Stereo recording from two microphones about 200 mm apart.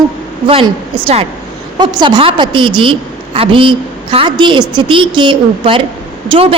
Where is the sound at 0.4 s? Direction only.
25° right (ahead or behind).